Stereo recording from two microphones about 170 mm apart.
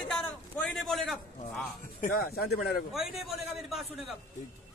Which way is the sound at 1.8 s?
65° left (ahead or behind).